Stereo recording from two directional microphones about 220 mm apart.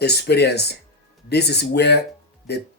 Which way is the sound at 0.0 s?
50° left (ahead or behind).